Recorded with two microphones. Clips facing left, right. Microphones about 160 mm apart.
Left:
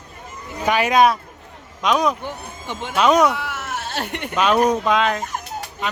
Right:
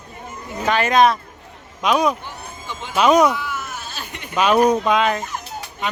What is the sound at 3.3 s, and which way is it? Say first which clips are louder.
Sheep: left 1 dB; 80° left.